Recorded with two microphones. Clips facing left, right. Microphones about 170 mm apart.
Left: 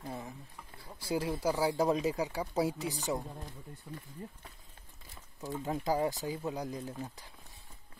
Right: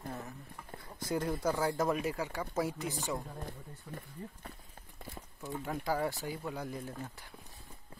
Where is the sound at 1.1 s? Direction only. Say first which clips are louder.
Left 1 dB; 5° left (ahead or behind).